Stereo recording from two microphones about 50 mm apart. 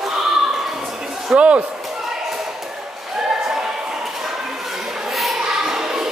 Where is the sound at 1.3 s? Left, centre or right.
Right.